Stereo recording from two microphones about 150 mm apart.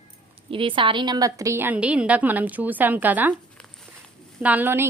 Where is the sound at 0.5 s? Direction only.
35° right (ahead or behind); by 3.3 s 10° right (ahead or behind).